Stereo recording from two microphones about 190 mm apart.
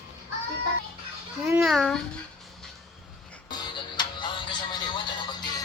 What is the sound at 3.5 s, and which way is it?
Music, 25° left (ahead or behind).